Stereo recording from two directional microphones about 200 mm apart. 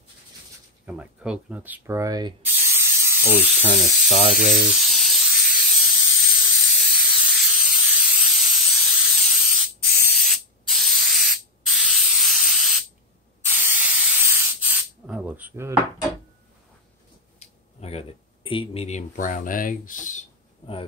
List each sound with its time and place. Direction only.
0.8 s ratchet: 5° right (ahead or behind)
4.1 s speech: 30° right (ahead or behind)
4.6 s steam: centre (ahead or behind)
13.5 s spray: 10° right (ahead or behind)
17.4 s speech: 30° left (ahead or behind)